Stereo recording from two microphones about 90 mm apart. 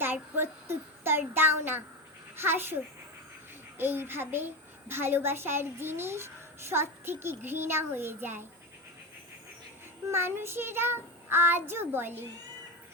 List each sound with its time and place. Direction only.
0.0 s child singing: 25° right (ahead or behind)
2.3 s a child's voice: 25° right (ahead or behind)
10.1 s a child's voice: 25° right (ahead or behind)